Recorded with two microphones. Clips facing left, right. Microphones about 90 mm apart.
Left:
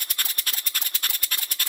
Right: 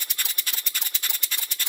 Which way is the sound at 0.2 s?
50° left (ahead or behind).